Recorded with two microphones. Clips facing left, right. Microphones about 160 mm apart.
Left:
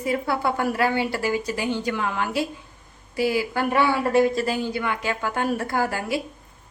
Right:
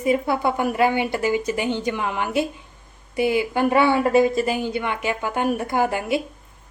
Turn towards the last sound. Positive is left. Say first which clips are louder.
# right 3 dB
turn(degrees=-20)  # may be behind; listen again after turning